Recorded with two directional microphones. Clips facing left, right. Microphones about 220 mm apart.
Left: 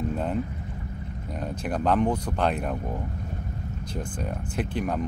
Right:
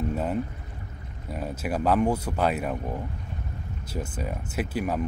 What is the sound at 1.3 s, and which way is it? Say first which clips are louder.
Speech: right 1 dB; 5° right (ahead or behind).